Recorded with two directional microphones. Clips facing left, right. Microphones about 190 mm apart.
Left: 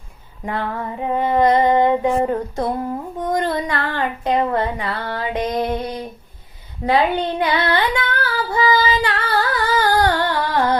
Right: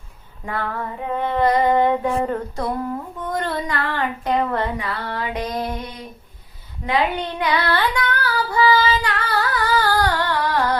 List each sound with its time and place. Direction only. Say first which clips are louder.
0.4 s female singing: left 2 dB; 20° left (ahead or behind)
3.7 s child singing: left 1 dB; 25° left (ahead or behind)
4.8 s music: left 2 dB; 30° left (ahead or behind)
6.8 s female singing: left 4 dB; 35° left (ahead or behind); by 9.0 s 15° left (ahead or behind)
9.0 s singing: left 3 dB; 30° left (ahead or behind)
10.2 s carnatic music: left 2 dB; 25° left (ahead or behind)